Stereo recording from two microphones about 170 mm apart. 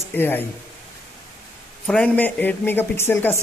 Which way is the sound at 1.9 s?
5° left (ahead or behind).